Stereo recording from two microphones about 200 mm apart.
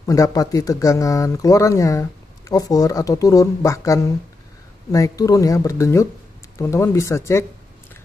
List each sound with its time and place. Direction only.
0.0 s speech: 15° left (ahead or behind)